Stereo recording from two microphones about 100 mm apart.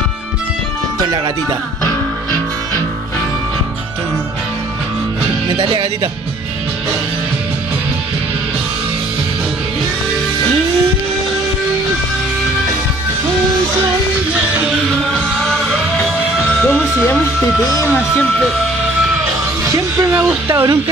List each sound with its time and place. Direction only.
5.6 s speech: 60° right (ahead or behind)
15.4 s music: 5° left (ahead or behind)
17.8 s speech: 20° left (ahead or behind)
19.6 s music: 30° right (ahead or behind)
20.2 s speech: 25° right (ahead or behind)